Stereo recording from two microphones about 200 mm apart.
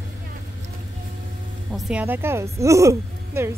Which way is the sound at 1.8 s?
5° right (ahead or behind).